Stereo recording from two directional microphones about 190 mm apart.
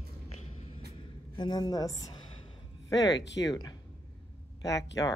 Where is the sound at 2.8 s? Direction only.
20° left (ahead or behind).